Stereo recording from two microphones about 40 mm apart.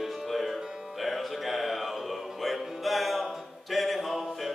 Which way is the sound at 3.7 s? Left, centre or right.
Centre.